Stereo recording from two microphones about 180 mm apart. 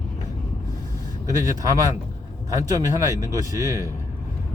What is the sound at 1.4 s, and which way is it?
Speech, 20° right (ahead or behind).